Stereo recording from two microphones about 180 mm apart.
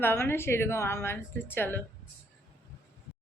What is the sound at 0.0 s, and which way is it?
A woman's voice, 10° left (ahead or behind).